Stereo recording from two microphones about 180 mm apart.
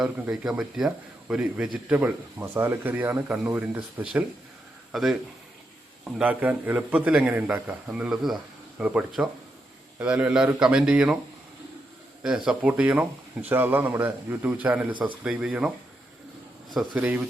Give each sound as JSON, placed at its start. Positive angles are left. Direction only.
{"t": 0.0, "sound": "speech", "side_deg": -5}
{"t": 6.1, "sound": "speech", "side_deg": -10}
{"t": 12.5, "sound": "speech", "side_deg": -5}
{"t": 16.7, "sound": "speech", "side_deg": -5}